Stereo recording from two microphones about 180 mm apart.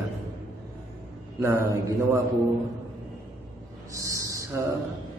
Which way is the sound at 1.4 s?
15° right (ahead or behind).